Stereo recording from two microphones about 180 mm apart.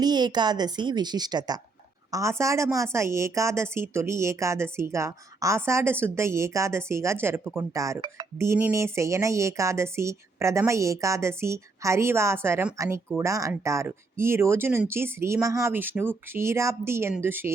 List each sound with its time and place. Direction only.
0.0 s a woman's voice: 25° right (ahead or behind)